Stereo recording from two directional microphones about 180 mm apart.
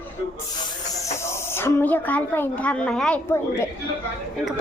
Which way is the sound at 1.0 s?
15° left (ahead or behind).